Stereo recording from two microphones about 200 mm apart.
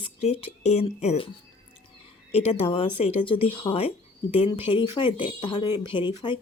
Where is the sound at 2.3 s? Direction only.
30° left (ahead or behind).